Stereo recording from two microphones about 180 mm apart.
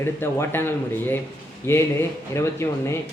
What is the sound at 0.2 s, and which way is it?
Speech, 10° left (ahead or behind).